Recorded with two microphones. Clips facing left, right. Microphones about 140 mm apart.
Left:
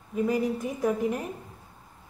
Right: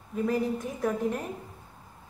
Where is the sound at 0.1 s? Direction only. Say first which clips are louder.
Left 2 dB; 5° left (ahead or behind).